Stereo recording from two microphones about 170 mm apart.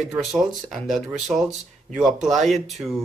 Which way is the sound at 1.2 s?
45° right (ahead or behind).